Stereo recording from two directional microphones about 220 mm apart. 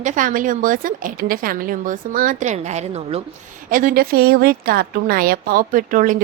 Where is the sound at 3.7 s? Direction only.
40° right (ahead or behind).